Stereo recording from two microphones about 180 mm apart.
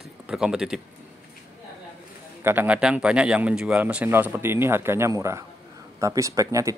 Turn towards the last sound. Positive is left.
turn(degrees=-20)  # may be behind; listen again after turning